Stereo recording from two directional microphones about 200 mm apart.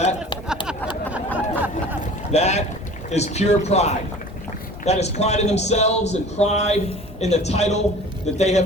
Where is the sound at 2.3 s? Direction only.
35° left (ahead or behind).